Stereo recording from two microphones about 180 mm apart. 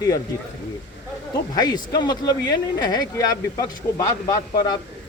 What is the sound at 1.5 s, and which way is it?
Speech, 20° left (ahead or behind).